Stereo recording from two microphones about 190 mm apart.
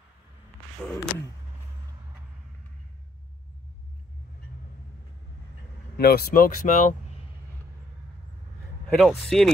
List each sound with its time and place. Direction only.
5.9 s speech: 55° left (ahead or behind); by 7.2 s 35° left (ahead or behind)
8.9 s speech: centre (ahead or behind)